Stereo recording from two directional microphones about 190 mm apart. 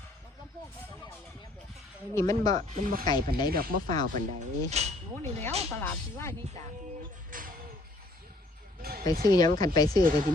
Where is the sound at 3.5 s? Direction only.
50° right (ahead or behind).